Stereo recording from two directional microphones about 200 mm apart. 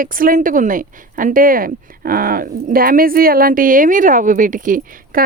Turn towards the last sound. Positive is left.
turn(degrees=-40)  # may be behind; listen again after turning